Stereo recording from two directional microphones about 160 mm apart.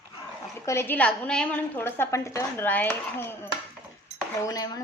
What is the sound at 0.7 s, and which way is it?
A woman's voice, 15° left (ahead or behind).